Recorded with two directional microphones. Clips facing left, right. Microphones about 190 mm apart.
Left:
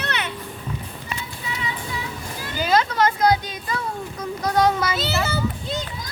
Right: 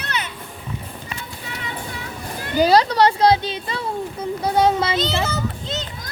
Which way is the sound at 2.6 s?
35° right (ahead or behind).